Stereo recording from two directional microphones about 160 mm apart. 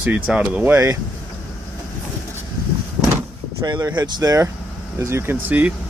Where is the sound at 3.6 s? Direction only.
25° right (ahead or behind).